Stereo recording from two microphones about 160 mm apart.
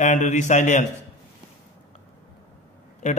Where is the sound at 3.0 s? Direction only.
45° left (ahead or behind).